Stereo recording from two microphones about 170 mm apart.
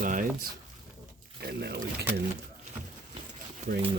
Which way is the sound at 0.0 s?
50° right (ahead or behind).